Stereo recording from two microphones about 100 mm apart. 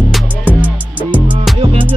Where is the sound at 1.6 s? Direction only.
75° right (ahead or behind).